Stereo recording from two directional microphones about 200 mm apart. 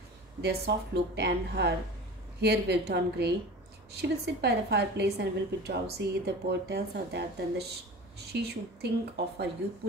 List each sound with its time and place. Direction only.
0.4 s a woman's voice: 55° right (ahead or behind)